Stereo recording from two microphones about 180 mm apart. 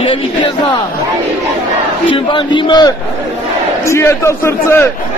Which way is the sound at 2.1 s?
25° left (ahead or behind).